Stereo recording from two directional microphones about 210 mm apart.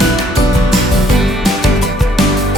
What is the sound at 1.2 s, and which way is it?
Music, centre (ahead or behind).